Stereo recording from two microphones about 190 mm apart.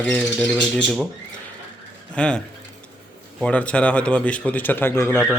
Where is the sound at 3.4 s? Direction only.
5° left (ahead or behind).